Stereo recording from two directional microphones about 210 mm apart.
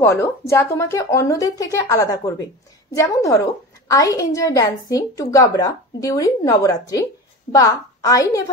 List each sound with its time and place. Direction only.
0.0 s a woman's voice: 15° left (ahead or behind)